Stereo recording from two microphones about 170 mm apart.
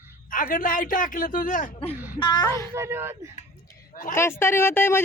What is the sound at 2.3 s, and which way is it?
Speech, 20° left (ahead or behind).